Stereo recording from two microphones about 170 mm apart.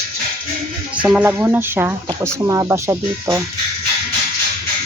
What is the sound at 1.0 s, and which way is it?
Speech, 10° right (ahead or behind).